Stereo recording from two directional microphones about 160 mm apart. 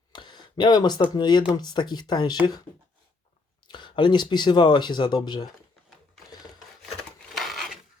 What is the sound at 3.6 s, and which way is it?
Speech, 30° left (ahead or behind).